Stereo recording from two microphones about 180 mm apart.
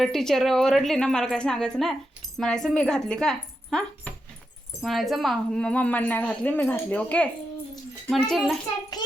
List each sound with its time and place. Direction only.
0.0 s a woman's voice: centre (ahead or behind)